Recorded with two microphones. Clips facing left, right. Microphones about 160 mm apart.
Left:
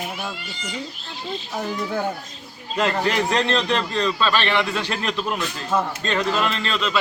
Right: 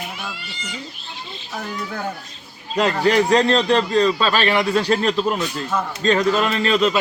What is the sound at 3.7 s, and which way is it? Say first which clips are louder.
A man's voice: right 6 dB; 35° right (ahead or behind).